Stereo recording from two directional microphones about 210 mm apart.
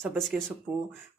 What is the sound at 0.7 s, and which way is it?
Speech, 20° right (ahead or behind).